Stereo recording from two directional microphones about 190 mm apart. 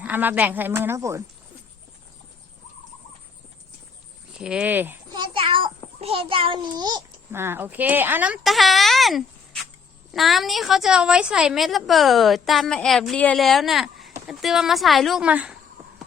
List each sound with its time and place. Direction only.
0.0 s a woman's voice: 10° right (ahead or behind)
4.4 s a woman's voice: 5° right (ahead or behind)
5.1 s a sound: 25° right (ahead or behind)
6.0 s a child's voice: 30° right (ahead or behind)
7.3 s a woman's voice: 10° right (ahead or behind)